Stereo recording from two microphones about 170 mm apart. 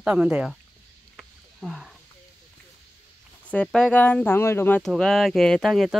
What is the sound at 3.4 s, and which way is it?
Speech, 5° left (ahead or behind).